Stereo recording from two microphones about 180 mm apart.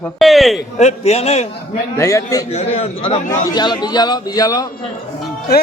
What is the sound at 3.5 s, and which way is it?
A man's voice, 25° left (ahead or behind).